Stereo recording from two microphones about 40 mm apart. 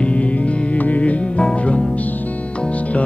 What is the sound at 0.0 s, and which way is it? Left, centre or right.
Music, left.